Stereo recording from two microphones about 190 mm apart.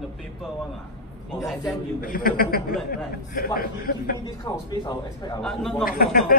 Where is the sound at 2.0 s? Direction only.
50° left (ahead or behind).